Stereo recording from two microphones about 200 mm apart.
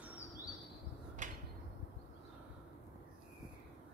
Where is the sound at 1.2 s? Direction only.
40° right (ahead or behind).